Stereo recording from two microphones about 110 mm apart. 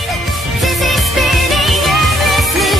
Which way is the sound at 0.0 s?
Centre (ahead or behind).